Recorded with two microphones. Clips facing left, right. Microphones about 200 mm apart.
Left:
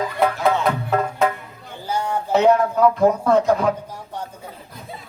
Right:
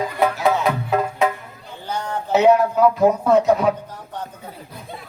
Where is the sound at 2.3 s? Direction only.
5° right (ahead or behind).